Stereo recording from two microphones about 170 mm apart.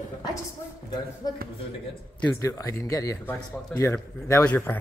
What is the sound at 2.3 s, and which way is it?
Speech, 20° left (ahead or behind).